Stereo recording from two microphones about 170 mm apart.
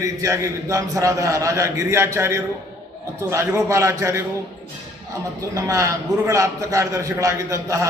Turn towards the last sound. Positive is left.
turn(degrees=-20)  # may be behind; listen again after turning